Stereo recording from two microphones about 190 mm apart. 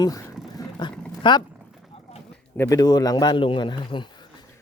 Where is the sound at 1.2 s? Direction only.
25° left (ahead or behind).